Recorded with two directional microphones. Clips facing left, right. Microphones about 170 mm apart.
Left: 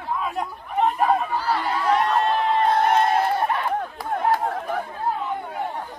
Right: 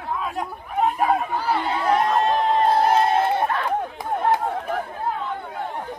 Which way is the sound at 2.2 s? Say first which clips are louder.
Right 1 dB; 40° right (ahead or behind).